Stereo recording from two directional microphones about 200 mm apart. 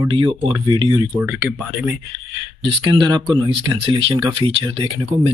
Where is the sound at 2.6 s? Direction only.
25° right (ahead or behind).